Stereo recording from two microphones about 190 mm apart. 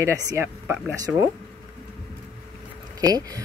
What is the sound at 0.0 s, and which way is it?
Speech, 15° right (ahead or behind).